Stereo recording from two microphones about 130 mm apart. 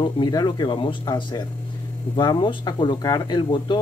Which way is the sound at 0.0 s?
30° left (ahead or behind).